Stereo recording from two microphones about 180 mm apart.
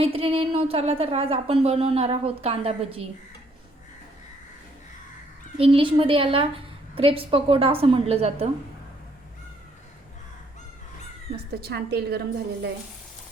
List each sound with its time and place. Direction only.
0.0 s a woman's voice: 30° right (ahead or behind)
5.5 s a woman's voice: 30° right (ahead or behind)
11.6 s a woman's voice: 65° right (ahead or behind)